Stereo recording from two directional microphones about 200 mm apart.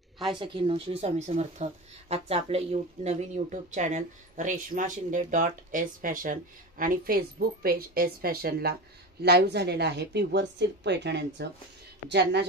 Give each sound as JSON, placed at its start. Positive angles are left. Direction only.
{"t": 0.4, "sound": "a woman's voice", "side_deg": -25}